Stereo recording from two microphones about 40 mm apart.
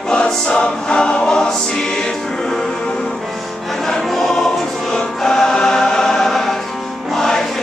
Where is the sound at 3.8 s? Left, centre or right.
Centre.